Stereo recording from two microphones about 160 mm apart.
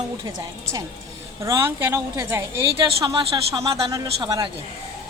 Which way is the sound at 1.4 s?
15° right (ahead or behind).